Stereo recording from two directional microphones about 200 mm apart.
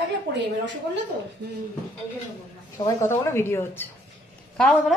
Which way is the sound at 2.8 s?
10° left (ahead or behind).